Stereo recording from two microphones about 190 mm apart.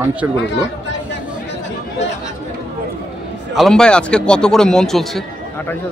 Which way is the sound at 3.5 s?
Centre (ahead or behind).